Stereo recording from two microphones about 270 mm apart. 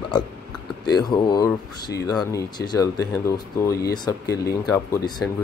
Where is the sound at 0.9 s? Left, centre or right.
Centre.